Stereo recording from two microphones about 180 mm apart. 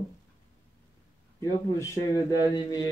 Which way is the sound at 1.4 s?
15° left (ahead or behind).